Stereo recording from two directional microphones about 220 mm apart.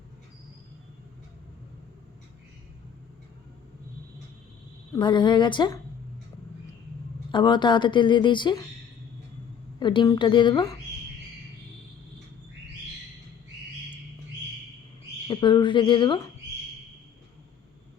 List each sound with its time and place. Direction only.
4.9 s speech: 20° left (ahead or behind)
7.3 s speech: 20° left (ahead or behind)
9.8 s speech: 20° left (ahead or behind)
15.3 s speech: 20° left (ahead or behind)